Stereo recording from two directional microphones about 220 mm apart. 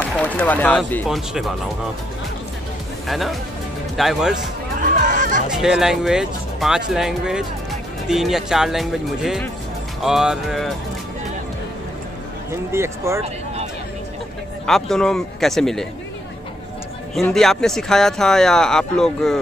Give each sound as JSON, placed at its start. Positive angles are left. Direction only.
{"t": 0.2, "sound": "speech", "side_deg": 5}
{"t": 3.1, "sound": "speech", "side_deg": 0}
{"t": 4.8, "sound": "music", "side_deg": -35}
{"t": 5.5, "sound": "speech", "side_deg": 0}
{"t": 12.7, "sound": "speech", "side_deg": -10}
{"t": 14.7, "sound": "speech", "side_deg": 0}
{"t": 17.1, "sound": "speech", "side_deg": 0}